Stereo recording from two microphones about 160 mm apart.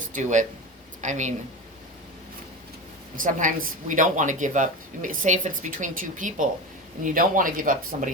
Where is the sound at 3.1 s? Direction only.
55° right (ahead or behind).